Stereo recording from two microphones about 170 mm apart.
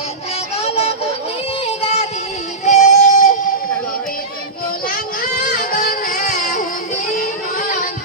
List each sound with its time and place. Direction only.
0.5 s music: 35° left (ahead or behind)
5.4 s music: 55° left (ahead or behind)